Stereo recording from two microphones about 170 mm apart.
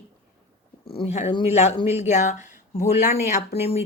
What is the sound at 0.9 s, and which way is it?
Speech, 35° left (ahead or behind).